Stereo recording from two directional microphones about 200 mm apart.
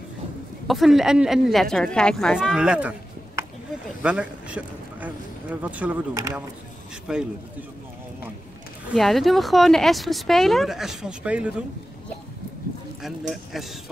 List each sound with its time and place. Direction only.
0.7 s a man's voice: centre (ahead or behind)
8.9 s speech: centre (ahead or behind)
13.3 s speech: centre (ahead or behind)